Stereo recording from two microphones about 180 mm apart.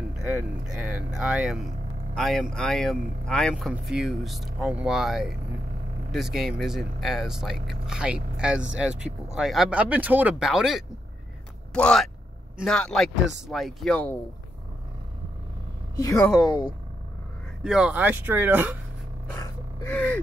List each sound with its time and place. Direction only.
0.7 s speech: 5° right (ahead or behind)
16.0 s speech: 15° left (ahead or behind)
16.3 s speech: centre (ahead or behind)
17.6 s speech: 5° right (ahead or behind)
19.3 s gasp: 15° left (ahead or behind)